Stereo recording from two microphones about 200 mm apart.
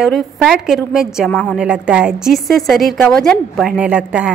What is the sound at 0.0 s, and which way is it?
A woman's voice, centre (ahead or behind).